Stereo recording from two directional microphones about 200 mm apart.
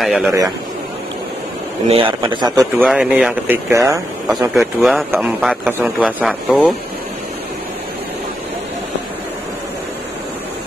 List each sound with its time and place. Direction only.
0.0 s speech: centre (ahead or behind)
1.9 s a man's voice: 25° right (ahead or behind)
2.8 s speech: centre (ahead or behind)
3.7 s speech: 15° right (ahead or behind)
4.6 s speech: centre (ahead or behind)